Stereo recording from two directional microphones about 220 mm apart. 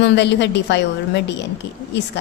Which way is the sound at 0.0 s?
50° left (ahead or behind).